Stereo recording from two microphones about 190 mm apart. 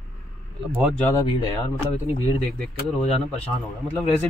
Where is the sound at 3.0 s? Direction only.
30° left (ahead or behind).